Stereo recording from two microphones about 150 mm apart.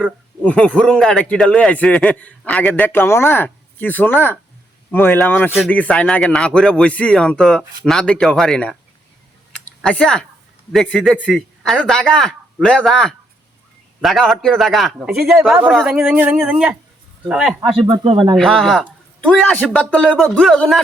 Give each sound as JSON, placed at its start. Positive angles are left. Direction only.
{"t": 0.4, "sound": "a man's voice", "side_deg": 5}
{"t": 9.5, "sound": "a sound", "side_deg": 5}
{"t": 10.7, "sound": "speech", "side_deg": 5}
{"t": 17.7, "sound": "speech", "side_deg": -30}
{"t": 18.3, "sound": "speech", "side_deg": 0}